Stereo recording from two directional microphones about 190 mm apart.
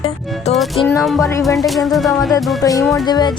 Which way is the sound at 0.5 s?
Centre (ahead or behind).